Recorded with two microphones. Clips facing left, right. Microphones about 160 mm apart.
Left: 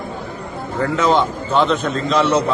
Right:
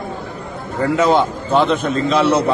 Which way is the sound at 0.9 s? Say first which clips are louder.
Right 2 dB; 10° right (ahead or behind).